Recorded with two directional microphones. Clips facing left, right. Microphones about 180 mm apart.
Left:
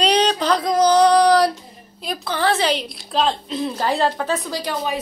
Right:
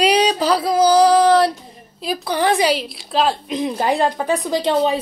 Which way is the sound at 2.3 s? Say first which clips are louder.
Right 3 dB; 15° right (ahead or behind).